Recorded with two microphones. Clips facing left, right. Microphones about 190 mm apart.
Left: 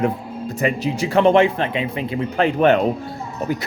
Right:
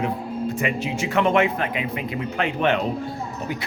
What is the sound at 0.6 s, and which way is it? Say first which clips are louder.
Speech: left 4 dB; 35° left (ahead or behind).